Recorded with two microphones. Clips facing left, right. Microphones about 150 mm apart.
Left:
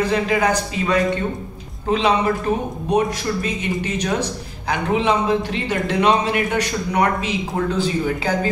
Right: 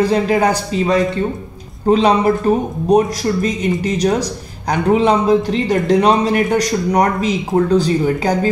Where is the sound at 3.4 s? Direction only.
35° right (ahead or behind).